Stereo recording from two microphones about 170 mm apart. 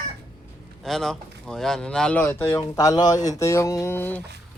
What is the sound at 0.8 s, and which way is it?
Speech, centre (ahead or behind).